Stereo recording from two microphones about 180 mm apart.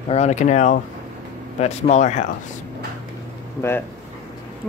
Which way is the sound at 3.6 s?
15° left (ahead or behind).